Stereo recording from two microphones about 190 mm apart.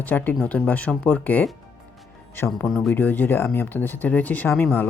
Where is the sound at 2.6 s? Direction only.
Centre (ahead or behind).